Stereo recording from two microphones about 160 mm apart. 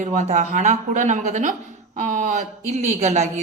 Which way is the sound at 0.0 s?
45° right (ahead or behind).